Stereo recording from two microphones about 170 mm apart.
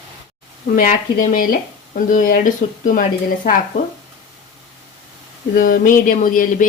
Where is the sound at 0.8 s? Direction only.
55° left (ahead or behind).